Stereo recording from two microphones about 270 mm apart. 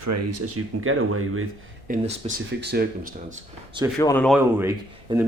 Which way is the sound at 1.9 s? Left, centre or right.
Right.